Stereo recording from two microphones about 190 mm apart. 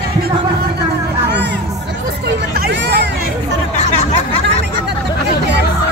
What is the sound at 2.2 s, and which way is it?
Hubbub, 60° right (ahead or behind).